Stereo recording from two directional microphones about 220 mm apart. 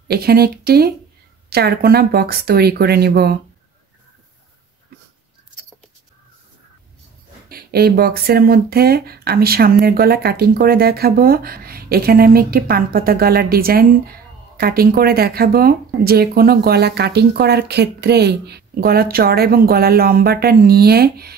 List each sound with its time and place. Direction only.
0.1 s speech: 45° right (ahead or behind)
7.4 s speech: 45° right (ahead or behind)